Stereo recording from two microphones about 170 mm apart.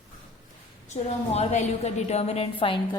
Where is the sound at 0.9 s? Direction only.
40° left (ahead or behind).